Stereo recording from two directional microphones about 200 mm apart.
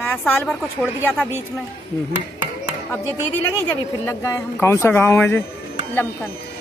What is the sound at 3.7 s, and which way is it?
A woman's voice, 15° left (ahead or behind).